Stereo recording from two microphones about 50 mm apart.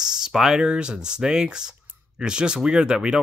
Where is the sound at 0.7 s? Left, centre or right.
Centre.